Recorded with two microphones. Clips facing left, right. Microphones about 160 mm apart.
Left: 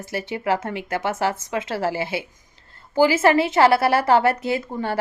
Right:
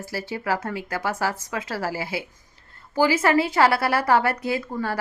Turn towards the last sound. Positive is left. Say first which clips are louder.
# left 2 dB
turn(degrees=25)  # may be behind; listen again after turning